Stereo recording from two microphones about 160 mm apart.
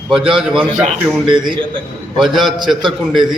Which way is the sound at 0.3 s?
5° right (ahead or behind).